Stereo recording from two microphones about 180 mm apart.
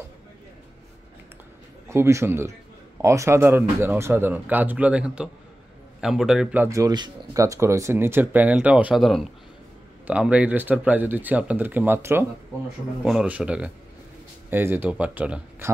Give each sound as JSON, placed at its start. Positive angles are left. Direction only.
{"t": 1.9, "sound": "speech", "side_deg": -15}